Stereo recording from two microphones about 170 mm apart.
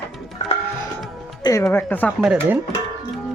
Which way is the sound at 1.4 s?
20° left (ahead or behind).